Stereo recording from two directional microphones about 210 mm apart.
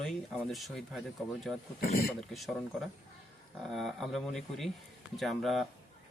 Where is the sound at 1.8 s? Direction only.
45° left (ahead or behind).